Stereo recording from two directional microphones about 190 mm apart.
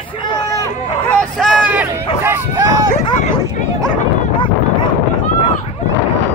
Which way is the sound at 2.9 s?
40° left (ahead or behind).